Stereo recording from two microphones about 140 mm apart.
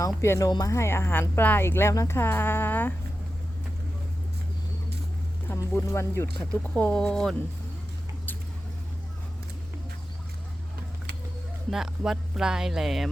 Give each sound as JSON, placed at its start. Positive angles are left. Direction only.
{"t": 0.2, "sound": "speech", "side_deg": 20}
{"t": 5.5, "sound": "speech", "side_deg": 20}
{"t": 11.7, "sound": "music", "side_deg": 0}